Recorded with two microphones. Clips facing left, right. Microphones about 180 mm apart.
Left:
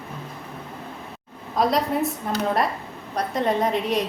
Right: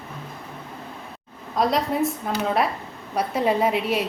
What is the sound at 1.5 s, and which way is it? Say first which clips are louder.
A woman's voice: even; centre (ahead or behind).